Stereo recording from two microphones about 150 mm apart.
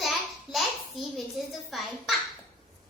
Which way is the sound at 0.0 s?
Centre (ahead or behind).